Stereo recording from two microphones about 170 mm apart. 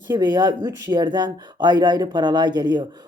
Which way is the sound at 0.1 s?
25° right (ahead or behind).